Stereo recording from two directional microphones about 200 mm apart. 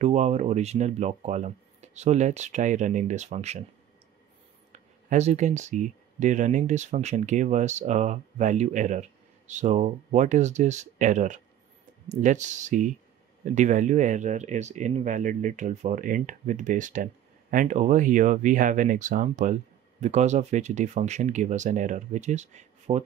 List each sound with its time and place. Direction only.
0.0 s speech: 35° right (ahead or behind)
4.7 s speech: 35° right (ahead or behind)